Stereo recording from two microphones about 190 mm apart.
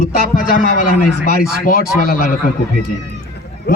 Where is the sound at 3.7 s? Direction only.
55° left (ahead or behind).